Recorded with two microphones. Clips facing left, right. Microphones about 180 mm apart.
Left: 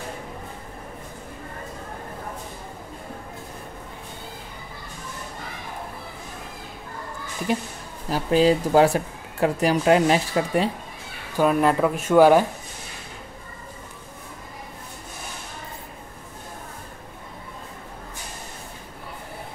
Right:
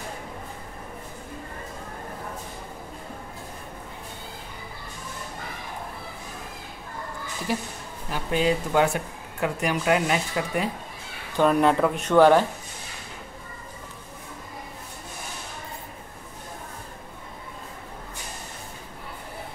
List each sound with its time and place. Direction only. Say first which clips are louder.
8.1 s speech: left 5 dB; 35° left (ahead or behind)
11.3 s speech: even; 5° left (ahead or behind)